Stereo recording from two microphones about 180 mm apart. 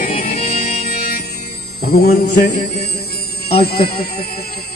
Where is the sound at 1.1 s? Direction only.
60° left (ahead or behind).